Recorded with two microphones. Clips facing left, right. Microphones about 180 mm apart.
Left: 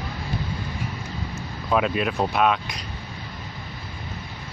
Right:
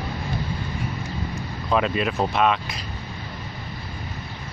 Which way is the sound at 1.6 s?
5° left (ahead or behind).